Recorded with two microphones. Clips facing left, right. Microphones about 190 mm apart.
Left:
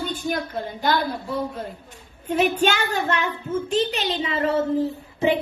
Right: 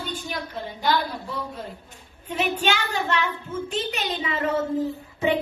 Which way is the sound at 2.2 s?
45° left (ahead or behind).